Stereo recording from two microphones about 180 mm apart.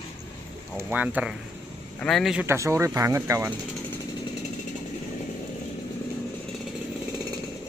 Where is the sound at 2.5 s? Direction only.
15° right (ahead or behind).